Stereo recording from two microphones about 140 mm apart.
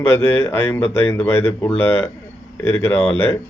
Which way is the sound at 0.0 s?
15° left (ahead or behind).